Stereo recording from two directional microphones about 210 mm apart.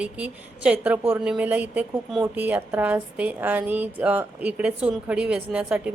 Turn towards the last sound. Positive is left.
turn(degrees=-5)  # may be behind; listen again after turning